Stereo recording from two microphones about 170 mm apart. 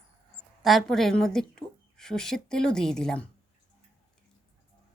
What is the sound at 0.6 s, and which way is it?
A woman's voice, centre (ahead or behind).